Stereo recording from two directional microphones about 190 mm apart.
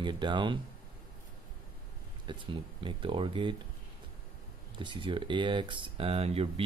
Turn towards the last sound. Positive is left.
turn(degrees=-30)  # may be behind; listen again after turning